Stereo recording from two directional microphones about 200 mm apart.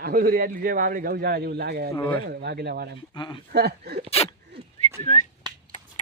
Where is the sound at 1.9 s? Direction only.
15° left (ahead or behind).